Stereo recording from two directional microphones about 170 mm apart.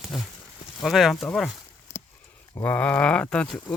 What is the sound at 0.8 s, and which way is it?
Speech, centre (ahead or behind).